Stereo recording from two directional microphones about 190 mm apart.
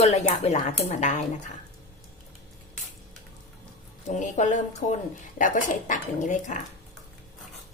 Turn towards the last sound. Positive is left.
turn(degrees=40)  # may be behind; listen again after turning